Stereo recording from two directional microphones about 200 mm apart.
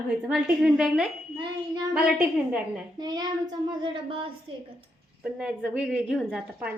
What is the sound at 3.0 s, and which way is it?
A woman's voice, 20° right (ahead or behind).